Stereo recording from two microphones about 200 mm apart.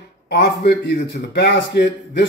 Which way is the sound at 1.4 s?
60° left (ahead or behind).